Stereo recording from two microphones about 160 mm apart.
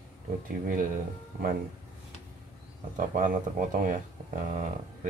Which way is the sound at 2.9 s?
55° right (ahead or behind).